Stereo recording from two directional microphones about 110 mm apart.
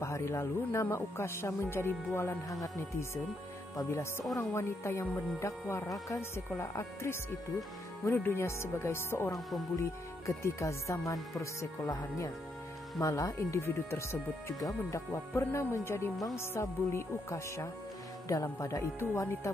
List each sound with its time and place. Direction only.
0.0 s speech: 25° left (ahead or behind)
3.7 s speech: 25° left (ahead or behind)